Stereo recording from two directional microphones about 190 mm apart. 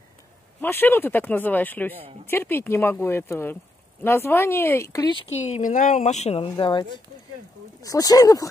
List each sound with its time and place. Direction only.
0.6 s speech: 10° left (ahead or behind)
5.5 s speech: 40° left (ahead or behind); by 8.5 s 20° left (ahead or behind)